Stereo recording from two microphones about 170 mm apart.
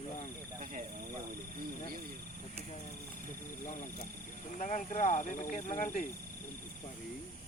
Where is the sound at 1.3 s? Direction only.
60° right (ahead or behind).